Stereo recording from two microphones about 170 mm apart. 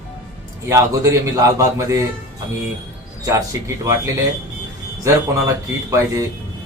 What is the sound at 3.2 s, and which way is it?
A man's voice, 20° right (ahead or behind).